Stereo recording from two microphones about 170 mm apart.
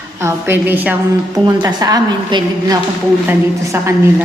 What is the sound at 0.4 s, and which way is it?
A woman's voice, 10° right (ahead or behind).